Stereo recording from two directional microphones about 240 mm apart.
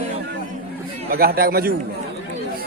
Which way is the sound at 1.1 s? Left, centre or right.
Right.